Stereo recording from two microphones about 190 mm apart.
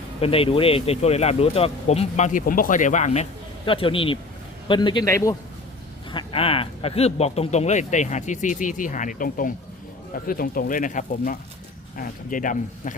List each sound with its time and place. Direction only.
0.2 s a man's voice: 30° left (ahead or behind)
6.1 s a man's voice: 30° left (ahead or behind); by 12.9 s 45° left (ahead or behind)